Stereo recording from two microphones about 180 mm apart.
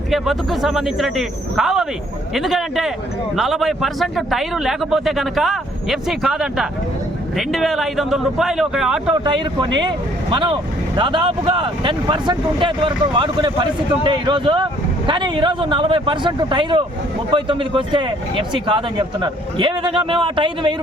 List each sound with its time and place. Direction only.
0.1 s a man's voice: centre (ahead or behind)
9.1 s speech: 25° right (ahead or behind)